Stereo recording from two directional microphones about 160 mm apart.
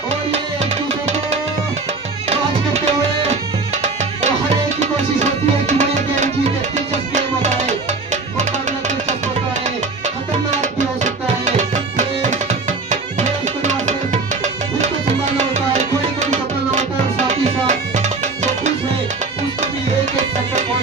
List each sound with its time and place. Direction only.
0.3 s music: 45° right (ahead or behind)
3.7 s music: 45° right (ahead or behind)
10.5 s music: 50° right (ahead or behind)